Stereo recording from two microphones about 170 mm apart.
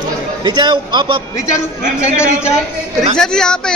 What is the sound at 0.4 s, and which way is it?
Speech, 25° right (ahead or behind).